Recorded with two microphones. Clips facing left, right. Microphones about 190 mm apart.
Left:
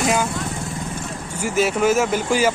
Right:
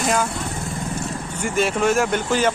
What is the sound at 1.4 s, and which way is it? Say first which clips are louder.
Speech: left 2 dB; 5° left (ahead or behind).